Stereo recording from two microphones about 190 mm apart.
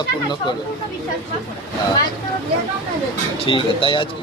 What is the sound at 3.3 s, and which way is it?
Speech, 30° left (ahead or behind).